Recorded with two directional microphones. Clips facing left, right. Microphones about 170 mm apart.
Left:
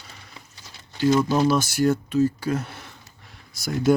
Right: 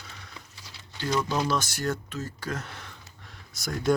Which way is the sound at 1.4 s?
10° left (ahead or behind).